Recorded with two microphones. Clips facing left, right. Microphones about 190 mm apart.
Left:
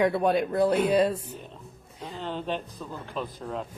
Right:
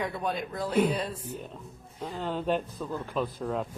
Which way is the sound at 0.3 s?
65° left (ahead or behind).